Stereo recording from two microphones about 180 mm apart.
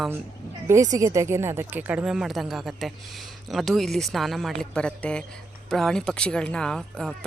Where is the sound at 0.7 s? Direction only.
20° right (ahead or behind).